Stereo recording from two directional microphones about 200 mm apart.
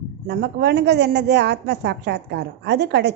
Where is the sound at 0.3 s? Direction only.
55° right (ahead or behind).